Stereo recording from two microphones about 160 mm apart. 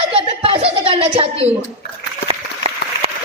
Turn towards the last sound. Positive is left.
turn(degrees=-35)  # may be behind; listen again after turning